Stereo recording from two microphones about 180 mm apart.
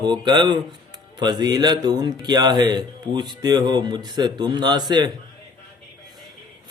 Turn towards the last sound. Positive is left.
turn(degrees=-25)  # may be behind; listen again after turning